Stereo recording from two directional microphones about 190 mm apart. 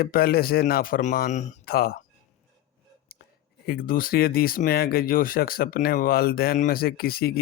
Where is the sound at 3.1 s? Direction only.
55° left (ahead or behind).